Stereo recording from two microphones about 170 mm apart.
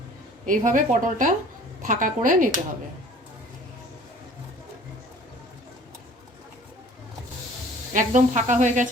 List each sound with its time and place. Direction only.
0.4 s speech: 50° right (ahead or behind)
7.9 s speech: 45° right (ahead or behind)